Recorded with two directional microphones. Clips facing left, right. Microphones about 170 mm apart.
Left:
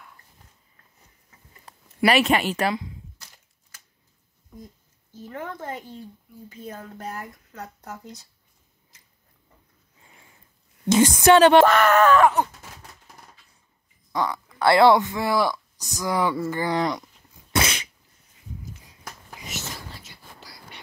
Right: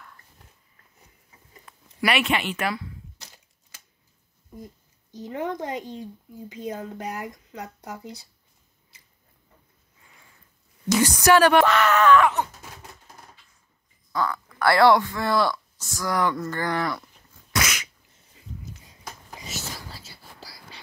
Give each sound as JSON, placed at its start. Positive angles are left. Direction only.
{"t": 1.7, "sound": "a sound", "side_deg": 35}
{"t": 2.0, "sound": "speech", "side_deg": 40}
{"t": 5.1, "sound": "speech", "side_deg": -20}
{"t": 10.9, "sound": "a woman's voice", "side_deg": 25}
{"t": 11.6, "sound": "speech", "side_deg": 50}
{"t": 14.1, "sound": "speech", "side_deg": 15}
{"t": 17.5, "sound": "dog", "side_deg": 30}
{"t": 19.4, "sound": "a sound", "side_deg": -35}
{"t": 20.0, "sound": "whispering", "side_deg": -35}